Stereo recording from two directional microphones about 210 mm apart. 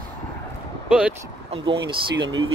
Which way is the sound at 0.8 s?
5° right (ahead or behind).